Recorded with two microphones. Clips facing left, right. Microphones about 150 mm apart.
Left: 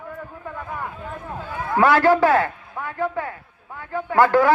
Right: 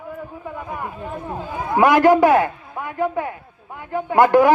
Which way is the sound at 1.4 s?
15° right (ahead or behind).